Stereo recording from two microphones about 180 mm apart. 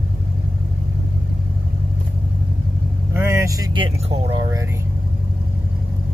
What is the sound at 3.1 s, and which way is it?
Speech, 15° right (ahead or behind).